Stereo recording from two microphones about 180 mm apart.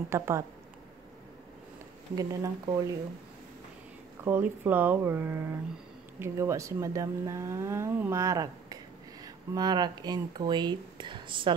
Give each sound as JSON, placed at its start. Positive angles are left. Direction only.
{"t": 0.1, "sound": "speech", "side_deg": -15}
{"t": 2.1, "sound": "speech", "side_deg": -20}
{"t": 4.2, "sound": "speech", "side_deg": -10}